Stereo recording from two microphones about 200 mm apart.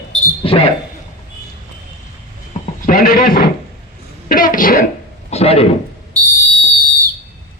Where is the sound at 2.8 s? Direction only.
45° left (ahead or behind).